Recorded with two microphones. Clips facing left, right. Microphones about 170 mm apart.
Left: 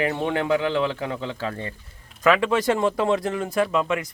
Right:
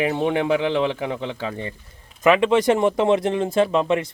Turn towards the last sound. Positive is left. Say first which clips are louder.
# right 4 dB
turn(degrees=-30)  # may be behind; listen again after turning